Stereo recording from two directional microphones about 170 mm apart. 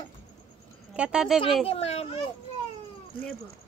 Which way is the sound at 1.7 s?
35° left (ahead or behind).